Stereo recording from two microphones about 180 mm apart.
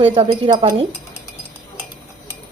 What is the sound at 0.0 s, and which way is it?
Speech, 30° right (ahead or behind).